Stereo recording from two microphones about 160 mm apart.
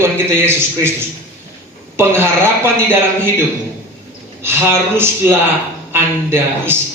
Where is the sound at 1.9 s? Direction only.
15° right (ahead or behind).